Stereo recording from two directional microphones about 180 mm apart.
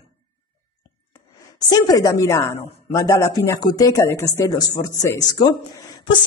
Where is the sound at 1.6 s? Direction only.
20° left (ahead or behind).